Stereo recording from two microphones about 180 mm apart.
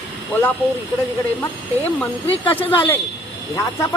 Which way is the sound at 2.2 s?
35° left (ahead or behind).